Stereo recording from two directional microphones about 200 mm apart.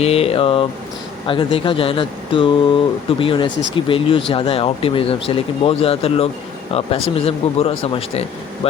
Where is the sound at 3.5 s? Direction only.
65° left (ahead or behind).